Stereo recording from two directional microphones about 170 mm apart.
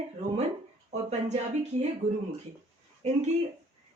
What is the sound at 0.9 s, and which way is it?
Speech, 40° right (ahead or behind).